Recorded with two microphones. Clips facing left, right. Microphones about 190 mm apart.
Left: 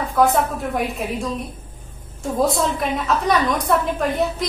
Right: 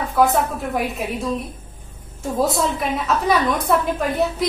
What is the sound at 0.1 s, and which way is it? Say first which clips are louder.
A woman's voice: even; centre (ahead or behind).